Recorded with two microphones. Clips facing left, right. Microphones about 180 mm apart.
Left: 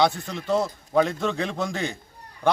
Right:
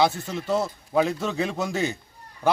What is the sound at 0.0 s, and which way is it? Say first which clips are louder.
A man's voice: even; 5° right (ahead or behind).